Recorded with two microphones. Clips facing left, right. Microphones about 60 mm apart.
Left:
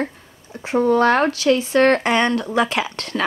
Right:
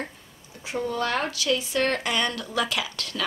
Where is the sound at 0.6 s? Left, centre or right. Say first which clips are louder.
Left 12 dB; left.